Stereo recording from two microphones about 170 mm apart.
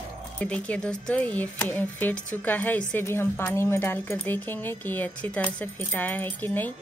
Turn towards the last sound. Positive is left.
turn(degrees=10)  # may be behind; listen again after turning